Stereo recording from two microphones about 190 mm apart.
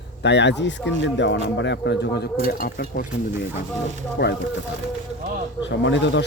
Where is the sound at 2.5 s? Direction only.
50° left (ahead or behind).